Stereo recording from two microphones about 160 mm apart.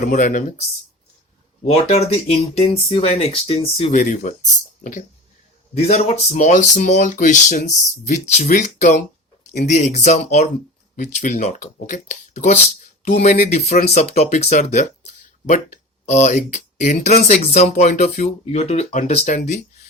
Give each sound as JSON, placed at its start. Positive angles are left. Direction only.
{"t": 0.0, "sound": "speech", "side_deg": 55}
{"t": 1.6, "sound": "speech", "side_deg": 40}
{"t": 5.7, "sound": "speech", "side_deg": 45}
{"t": 13.5, "sound": "speech", "side_deg": 45}